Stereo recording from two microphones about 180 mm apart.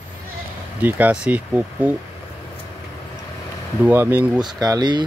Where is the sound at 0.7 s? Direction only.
10° right (ahead or behind).